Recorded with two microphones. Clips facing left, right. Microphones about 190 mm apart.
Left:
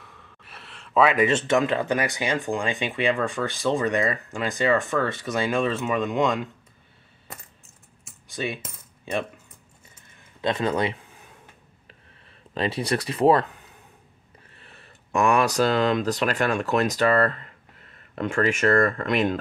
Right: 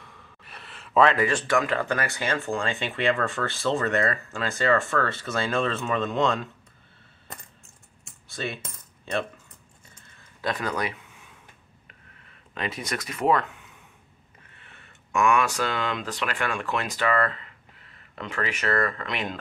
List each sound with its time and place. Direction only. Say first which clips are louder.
0.0 s sigh: even; centre (ahead or behind)
1.0 s speech: left 3 dB; 20° left (ahead or behind)
8.3 s coin: left 3 dB; 15° left (ahead or behind)
10.4 s speech: left 5 dB; 25° left (ahead or behind)
12.5 s speech: left 7 dB; 30° left (ahead or behind)